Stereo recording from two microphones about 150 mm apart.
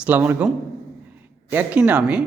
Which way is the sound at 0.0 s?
10° right (ahead or behind).